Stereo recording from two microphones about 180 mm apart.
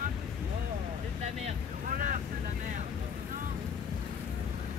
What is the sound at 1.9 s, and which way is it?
Vehicle, 45° right (ahead or behind).